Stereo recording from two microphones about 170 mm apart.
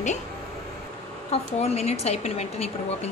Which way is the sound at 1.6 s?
40° left (ahead or behind).